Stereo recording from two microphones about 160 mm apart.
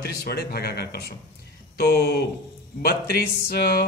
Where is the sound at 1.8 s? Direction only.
75° left (ahead or behind).